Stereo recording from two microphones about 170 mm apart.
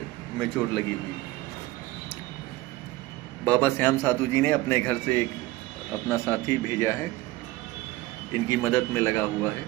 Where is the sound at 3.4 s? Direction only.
10° left (ahead or behind).